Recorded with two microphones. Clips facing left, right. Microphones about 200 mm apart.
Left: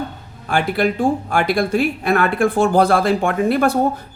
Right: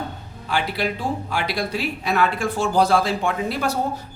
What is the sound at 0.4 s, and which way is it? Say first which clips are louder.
Speech: left 6 dB; 50° left (ahead or behind).